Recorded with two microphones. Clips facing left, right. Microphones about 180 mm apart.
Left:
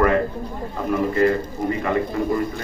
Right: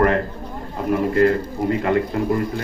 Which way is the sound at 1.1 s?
65° right (ahead or behind).